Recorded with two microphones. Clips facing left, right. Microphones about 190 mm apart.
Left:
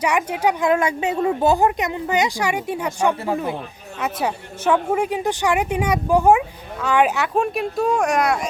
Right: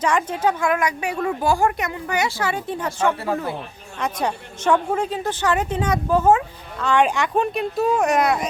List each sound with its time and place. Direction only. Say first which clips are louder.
0.0 s a woman's voice: left 1 dB; 10° left (ahead or behind)
0.7 s a woman's voice: left 3 dB; 25° left (ahead or behind)
4.0 s a woman's voice: even; 5° left (ahead or behind)